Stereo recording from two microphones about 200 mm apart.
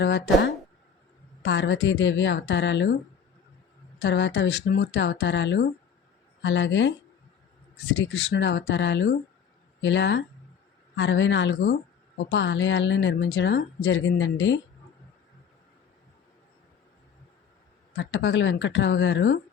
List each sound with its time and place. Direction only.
0.0 s a woman's voice: 65° left (ahead or behind)
4.0 s a woman's voice: 65° left (ahead or behind)
17.9 s a woman's voice: 70° left (ahead or behind)